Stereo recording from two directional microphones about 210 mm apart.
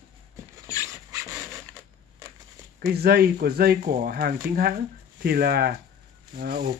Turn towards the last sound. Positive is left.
turn(degrees=-40)  # may be behind; listen again after turning